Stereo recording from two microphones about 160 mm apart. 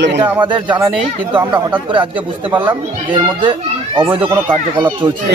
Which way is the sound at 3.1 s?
30° right (ahead or behind).